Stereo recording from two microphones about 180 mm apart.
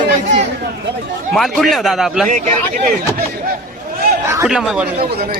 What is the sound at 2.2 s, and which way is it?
Speech, 45° right (ahead or behind).